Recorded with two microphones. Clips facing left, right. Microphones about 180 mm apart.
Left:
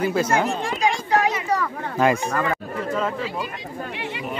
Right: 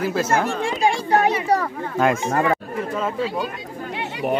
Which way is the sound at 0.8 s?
35° right (ahead or behind).